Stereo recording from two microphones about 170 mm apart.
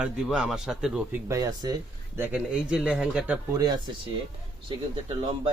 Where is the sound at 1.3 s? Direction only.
20° right (ahead or behind).